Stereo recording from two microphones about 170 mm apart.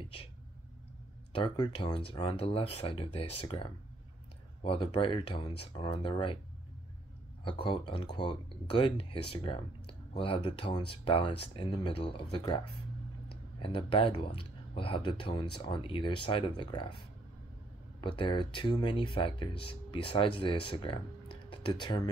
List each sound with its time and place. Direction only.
1.3 s speech: 30° left (ahead or behind)
4.6 s speech: 30° left (ahead or behind)
7.4 s speech: 30° left (ahead or behind)
18.0 s speech: 30° left (ahead or behind)